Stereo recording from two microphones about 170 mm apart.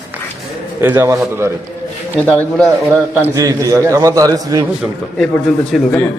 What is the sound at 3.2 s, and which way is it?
A man's voice, 20° right (ahead or behind).